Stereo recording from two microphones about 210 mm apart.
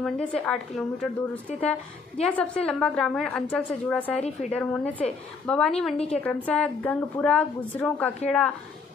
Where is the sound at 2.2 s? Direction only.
5° left (ahead or behind).